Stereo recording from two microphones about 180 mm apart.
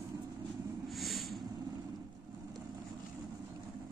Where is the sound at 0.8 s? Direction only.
Centre (ahead or behind).